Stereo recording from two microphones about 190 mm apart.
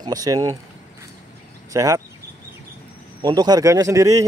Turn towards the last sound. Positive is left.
turn(degrees=-15)  # may be behind; listen again after turning